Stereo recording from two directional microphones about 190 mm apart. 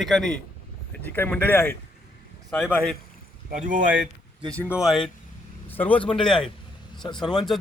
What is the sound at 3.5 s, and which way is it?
Speech, 45° right (ahead or behind).